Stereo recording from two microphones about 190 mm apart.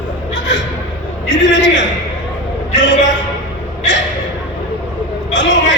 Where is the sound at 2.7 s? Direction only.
70° left (ahead or behind).